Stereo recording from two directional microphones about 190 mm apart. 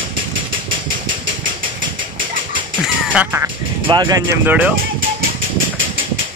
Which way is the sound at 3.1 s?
10° right (ahead or behind).